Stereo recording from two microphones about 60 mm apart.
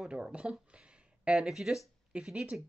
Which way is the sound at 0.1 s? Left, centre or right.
Centre.